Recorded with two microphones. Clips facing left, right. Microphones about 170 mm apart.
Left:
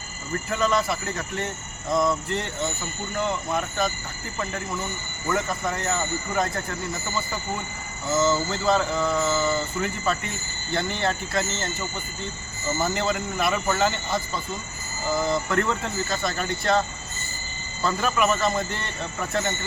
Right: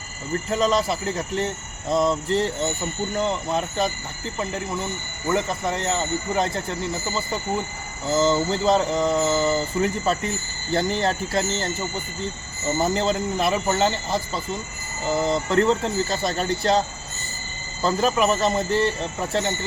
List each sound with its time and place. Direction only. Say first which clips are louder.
0.5 s speech: right 2 dB; 30° right (ahead or behind)
12.7 s speech: right 3 dB; 30° right (ahead or behind)
17.8 s speech: right 3 dB; 30° right (ahead or behind)